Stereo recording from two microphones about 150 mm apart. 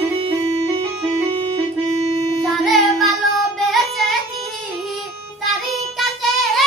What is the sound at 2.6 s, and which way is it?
Child singing, centre (ahead or behind).